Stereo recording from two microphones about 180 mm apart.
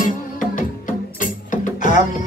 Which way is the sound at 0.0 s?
45° left (ahead or behind).